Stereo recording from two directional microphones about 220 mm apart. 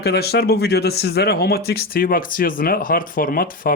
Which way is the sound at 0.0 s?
45° left (ahead or behind).